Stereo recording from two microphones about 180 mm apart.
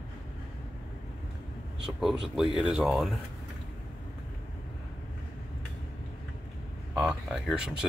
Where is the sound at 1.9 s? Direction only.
5° right (ahead or behind).